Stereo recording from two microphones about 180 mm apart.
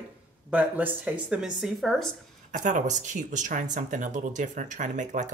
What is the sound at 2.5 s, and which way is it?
Speech, 45° right (ahead or behind).